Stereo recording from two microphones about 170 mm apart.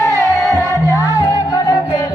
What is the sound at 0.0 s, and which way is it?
Music, 15° left (ahead or behind).